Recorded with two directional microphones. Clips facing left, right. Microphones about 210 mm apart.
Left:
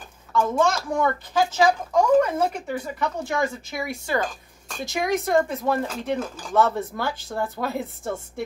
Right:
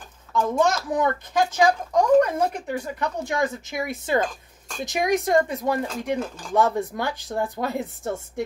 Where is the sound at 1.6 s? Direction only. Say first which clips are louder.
Even; 5° left (ahead or behind).